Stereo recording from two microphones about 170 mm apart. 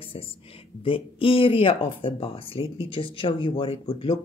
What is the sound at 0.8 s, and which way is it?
Speech, 30° left (ahead or behind).